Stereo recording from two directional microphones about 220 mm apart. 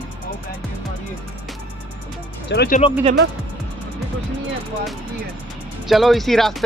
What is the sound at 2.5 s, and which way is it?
Speech, 50° left (ahead or behind).